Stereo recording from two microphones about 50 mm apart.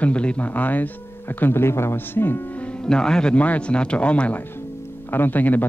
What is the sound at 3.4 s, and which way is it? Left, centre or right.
Speech, left.